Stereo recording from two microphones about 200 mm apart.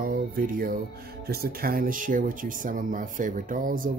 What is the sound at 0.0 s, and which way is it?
Speech, 45° right (ahead or behind).